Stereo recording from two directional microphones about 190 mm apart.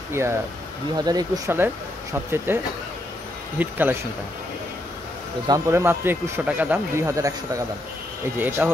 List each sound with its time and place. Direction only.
0.9 s speech: 20° right (ahead or behind)
5.5 s speech: 15° right (ahead or behind)